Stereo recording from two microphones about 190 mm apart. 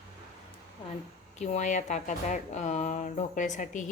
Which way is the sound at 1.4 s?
40° left (ahead or behind).